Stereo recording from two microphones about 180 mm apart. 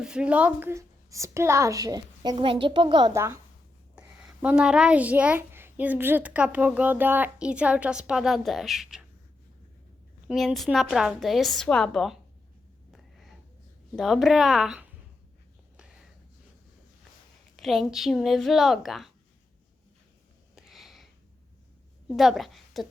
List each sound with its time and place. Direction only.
0.0 s a child's voice: 5° right (ahead or behind)
4.4 s a child's voice: 5° right (ahead or behind)
10.2 s a woman's voice: centre (ahead or behind)
12.9 s snort: centre (ahead or behind)
13.9 s a woman's voice: centre (ahead or behind)
17.6 s a woman's voice: centre (ahead or behind)
20.6 s a sound: centre (ahead or behind)
22.0 s a woman's voice: centre (ahead or behind)